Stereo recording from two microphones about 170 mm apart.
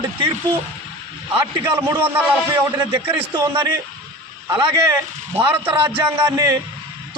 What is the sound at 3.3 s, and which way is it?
A man's voice, 25° right (ahead or behind).